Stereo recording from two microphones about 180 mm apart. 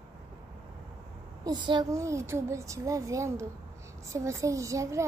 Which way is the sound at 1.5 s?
25° right (ahead or behind).